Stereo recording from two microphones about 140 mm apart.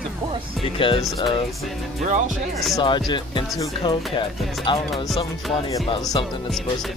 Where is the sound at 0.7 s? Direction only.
40° left (ahead or behind).